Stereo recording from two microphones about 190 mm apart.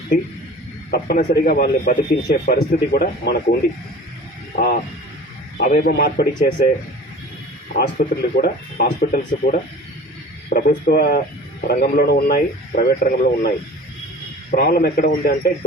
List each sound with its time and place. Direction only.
0.9 s a man's voice: 55° left (ahead or behind)
4.5 s speech: 50° left (ahead or behind)
7.8 s a man's voice: 55° left (ahead or behind)
14.5 s speech: 50° left (ahead or behind)